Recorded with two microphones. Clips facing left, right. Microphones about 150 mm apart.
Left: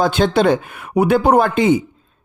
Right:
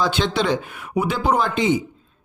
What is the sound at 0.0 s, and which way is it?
Speech, 50° left (ahead or behind).